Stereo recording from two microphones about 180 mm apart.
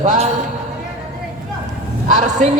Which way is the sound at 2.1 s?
40° right (ahead or behind).